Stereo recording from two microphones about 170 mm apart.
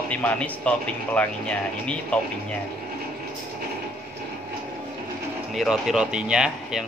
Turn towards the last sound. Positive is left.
turn(degrees=-5)  # may be behind; listen again after turning